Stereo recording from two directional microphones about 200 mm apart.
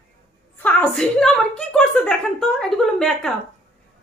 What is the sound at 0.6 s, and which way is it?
A woman's voice, 5° left (ahead or behind).